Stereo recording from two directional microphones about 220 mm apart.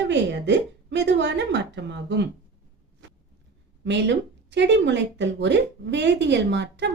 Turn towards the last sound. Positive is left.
turn(degrees=-50)  # may be behind; listen again after turning